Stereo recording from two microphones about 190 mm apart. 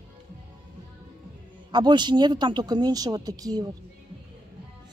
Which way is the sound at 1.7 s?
25° right (ahead or behind).